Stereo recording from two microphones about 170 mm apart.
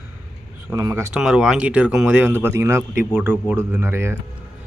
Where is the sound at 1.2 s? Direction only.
5° right (ahead or behind).